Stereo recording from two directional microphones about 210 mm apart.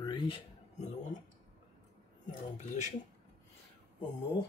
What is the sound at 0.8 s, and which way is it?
Speech, 35° left (ahead or behind).